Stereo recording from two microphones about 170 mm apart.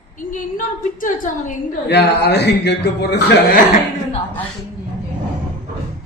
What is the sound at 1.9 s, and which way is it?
A man's voice, 80° left.